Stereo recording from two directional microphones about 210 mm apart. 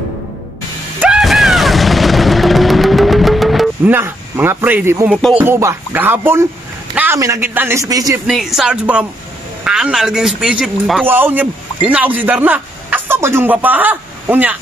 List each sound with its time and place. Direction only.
0.9 s artillery fire: 5° right (ahead or behind)
7.0 s a man's voice: 15° right (ahead or behind)
8.3 s a man's voice: centre (ahead or behind)